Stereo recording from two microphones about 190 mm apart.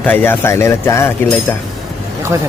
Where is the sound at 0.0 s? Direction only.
10° left (ahead or behind).